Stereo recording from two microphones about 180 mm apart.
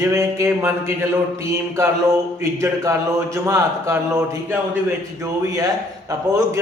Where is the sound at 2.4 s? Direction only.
15° right (ahead or behind).